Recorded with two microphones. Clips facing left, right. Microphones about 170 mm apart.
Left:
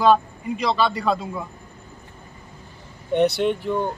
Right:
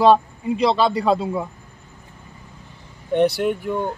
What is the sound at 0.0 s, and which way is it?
A man's voice, 30° right (ahead or behind).